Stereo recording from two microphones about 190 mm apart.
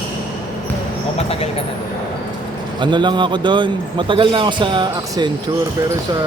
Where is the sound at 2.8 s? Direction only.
25° right (ahead or behind).